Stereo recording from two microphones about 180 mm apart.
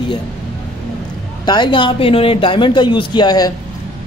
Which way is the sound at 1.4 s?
25° left (ahead or behind).